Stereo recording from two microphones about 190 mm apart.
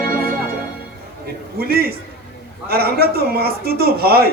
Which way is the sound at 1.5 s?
55° right (ahead or behind).